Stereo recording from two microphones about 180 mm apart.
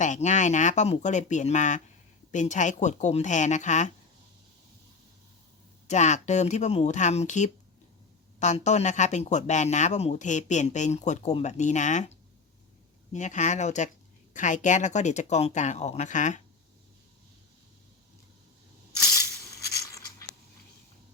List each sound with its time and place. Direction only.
0.0 s speech: 40° left (ahead or behind)
5.9 s speech: 40° left (ahead or behind)
13.1 s speech: 40° left (ahead or behind)
19.6 s a sound: 20° left (ahead or behind)